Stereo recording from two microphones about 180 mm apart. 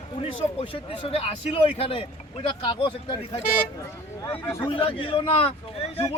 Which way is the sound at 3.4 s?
55° left (ahead or behind).